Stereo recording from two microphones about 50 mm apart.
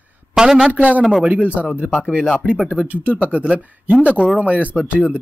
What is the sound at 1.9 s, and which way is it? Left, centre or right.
Speech, centre.